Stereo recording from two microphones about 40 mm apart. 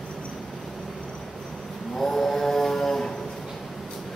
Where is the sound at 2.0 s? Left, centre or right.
Centre.